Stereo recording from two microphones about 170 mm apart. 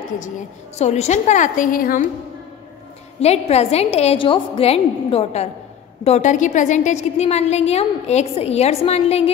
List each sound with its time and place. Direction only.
0.7 s a woman's voice: 40° left (ahead or behind); by 2.0 s 55° left (ahead or behind)
3.2 s a woman's voice: 40° left (ahead or behind)